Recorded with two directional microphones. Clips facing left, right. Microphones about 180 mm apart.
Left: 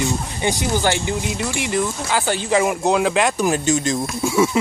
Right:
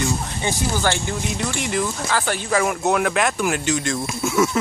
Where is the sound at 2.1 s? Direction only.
20° left (ahead or behind).